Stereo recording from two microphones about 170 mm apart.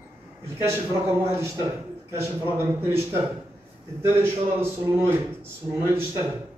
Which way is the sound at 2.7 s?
15° right (ahead or behind).